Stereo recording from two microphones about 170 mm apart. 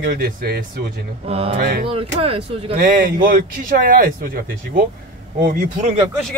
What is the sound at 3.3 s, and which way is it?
Speech, 55° right (ahead or behind).